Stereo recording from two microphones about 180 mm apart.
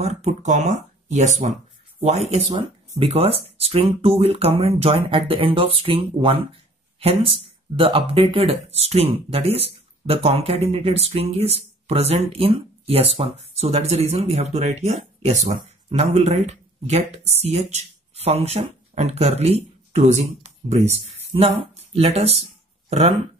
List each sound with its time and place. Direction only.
0.0 s speech: 35° right (ahead or behind)
2.5 s speech: 25° right (ahead or behind)
21.9 s speech: 35° right (ahead or behind)